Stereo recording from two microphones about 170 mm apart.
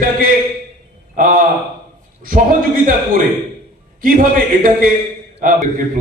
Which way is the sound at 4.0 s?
60° right (ahead or behind).